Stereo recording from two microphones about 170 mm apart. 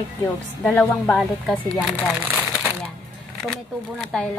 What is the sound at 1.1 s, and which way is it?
Speech, 5° left (ahead or behind).